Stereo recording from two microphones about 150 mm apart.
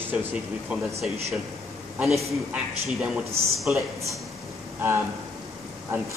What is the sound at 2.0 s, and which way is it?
Speech, centre (ahead or behind).